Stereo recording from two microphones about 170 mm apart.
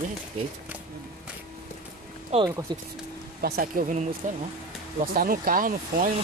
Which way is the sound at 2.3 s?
40° right (ahead or behind).